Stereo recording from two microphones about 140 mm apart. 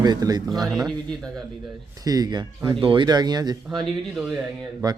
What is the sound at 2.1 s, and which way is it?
Speech, 30° right (ahead or behind).